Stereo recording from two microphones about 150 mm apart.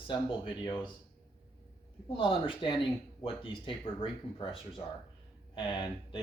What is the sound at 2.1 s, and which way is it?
Speech, 35° left (ahead or behind).